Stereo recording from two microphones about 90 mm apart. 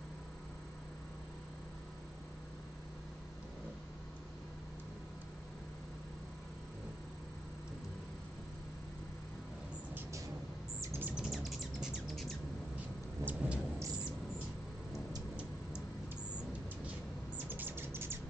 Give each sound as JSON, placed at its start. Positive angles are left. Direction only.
{"t": 10.8, "sound": "bird", "side_deg": -25}
{"t": 11.1, "sound": "bird", "side_deg": -5}
{"t": 13.2, "sound": "thunder", "side_deg": -20}
{"t": 17.5, "sound": "bird", "side_deg": -20}